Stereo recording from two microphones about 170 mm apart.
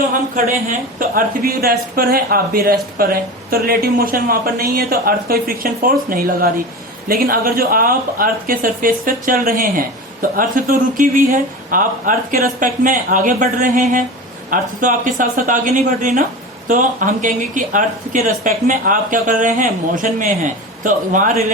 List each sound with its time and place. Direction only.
0.1 s a woman's voice: 50° right (ahead or behind)